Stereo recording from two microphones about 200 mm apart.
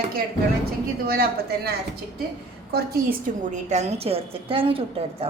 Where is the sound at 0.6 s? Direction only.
50° right (ahead or behind).